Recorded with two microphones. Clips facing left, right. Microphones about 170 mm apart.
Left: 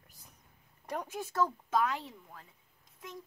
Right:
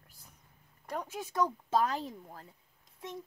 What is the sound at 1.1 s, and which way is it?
Speech, 10° right (ahead or behind).